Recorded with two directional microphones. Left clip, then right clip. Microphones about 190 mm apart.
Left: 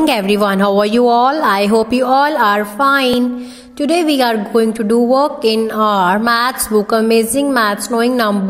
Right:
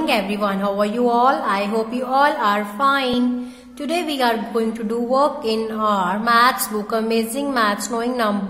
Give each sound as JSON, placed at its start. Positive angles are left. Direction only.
{"t": 0.0, "sound": "a woman's voice", "side_deg": 40}